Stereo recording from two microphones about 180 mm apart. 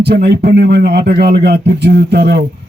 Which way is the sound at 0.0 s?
65° right (ahead or behind).